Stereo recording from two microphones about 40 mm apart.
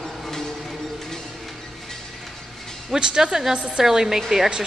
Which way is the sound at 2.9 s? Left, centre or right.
Centre.